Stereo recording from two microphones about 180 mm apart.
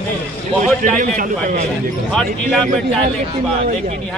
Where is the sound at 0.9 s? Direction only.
45° right (ahead or behind).